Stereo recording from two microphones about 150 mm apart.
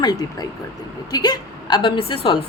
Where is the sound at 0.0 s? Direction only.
25° left (ahead or behind).